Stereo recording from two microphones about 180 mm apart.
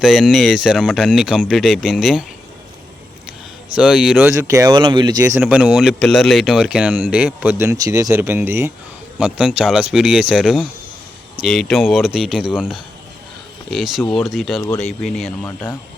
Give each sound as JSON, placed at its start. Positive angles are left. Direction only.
{"t": 0.0, "sound": "speech", "side_deg": 0}
{"t": 3.8, "sound": "speech", "side_deg": -5}
{"t": 4.3, "sound": "speech", "side_deg": -15}
{"t": 5.4, "sound": "speech", "side_deg": -5}
{"t": 13.7, "sound": "speech", "side_deg": 0}